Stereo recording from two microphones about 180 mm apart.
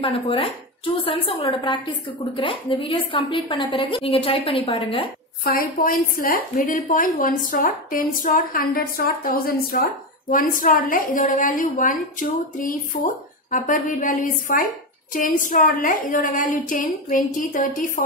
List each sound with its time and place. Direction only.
0.0 s a woman's voice: 30° left (ahead or behind)
5.4 s a woman's voice: 55° left (ahead or behind)